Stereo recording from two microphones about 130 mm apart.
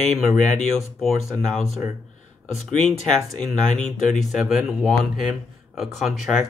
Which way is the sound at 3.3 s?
Centre (ahead or behind).